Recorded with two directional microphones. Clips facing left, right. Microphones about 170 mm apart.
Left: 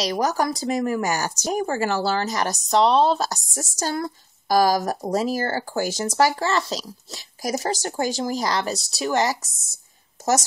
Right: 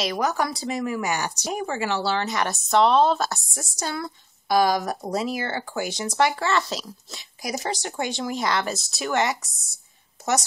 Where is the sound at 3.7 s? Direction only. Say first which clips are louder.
Left 4 dB; 45° left (ahead or behind).